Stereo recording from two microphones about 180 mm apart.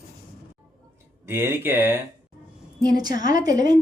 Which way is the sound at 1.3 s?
10° right (ahead or behind).